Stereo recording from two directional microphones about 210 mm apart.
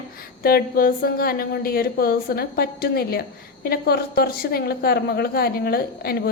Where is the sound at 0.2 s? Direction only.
45° left (ahead or behind).